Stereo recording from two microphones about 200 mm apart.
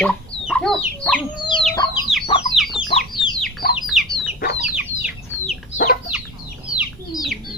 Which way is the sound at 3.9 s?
Centre (ahead or behind).